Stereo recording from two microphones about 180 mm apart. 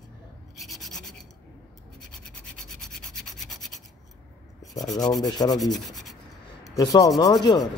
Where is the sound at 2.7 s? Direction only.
Centre (ahead or behind).